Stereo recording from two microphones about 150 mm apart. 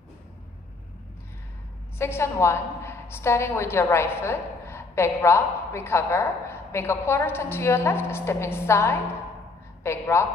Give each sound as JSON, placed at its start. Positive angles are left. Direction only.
{"t": 2.0, "sound": "a woman's voice", "side_deg": 15}